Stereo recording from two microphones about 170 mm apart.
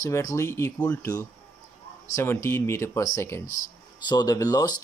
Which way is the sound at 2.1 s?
15° left (ahead or behind).